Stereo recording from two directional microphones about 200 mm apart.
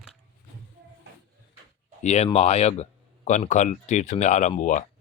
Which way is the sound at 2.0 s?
35° left (ahead or behind).